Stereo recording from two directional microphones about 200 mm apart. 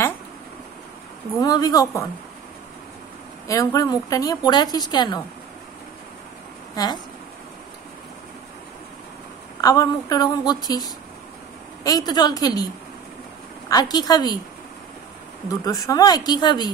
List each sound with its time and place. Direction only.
1.4 s a woman's voice: 20° left (ahead or behind)
3.4 s a woman's voice: 15° left (ahead or behind)
6.7 s speech: 20° left (ahead or behind)
9.6 s a woman's voice: 20° left (ahead or behind)
13.7 s a woman's voice: 20° left (ahead or behind)
15.4 s a woman's voice: 20° left (ahead or behind)